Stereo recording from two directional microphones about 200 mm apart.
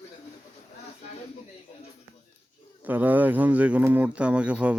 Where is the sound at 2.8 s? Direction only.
10° right (ahead or behind).